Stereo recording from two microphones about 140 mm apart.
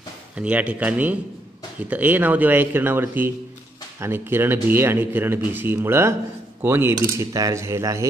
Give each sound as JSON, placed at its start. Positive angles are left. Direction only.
{"t": 0.4, "sound": "speech", "side_deg": -10}